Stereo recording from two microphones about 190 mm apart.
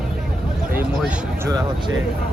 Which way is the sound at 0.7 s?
10° right (ahead or behind).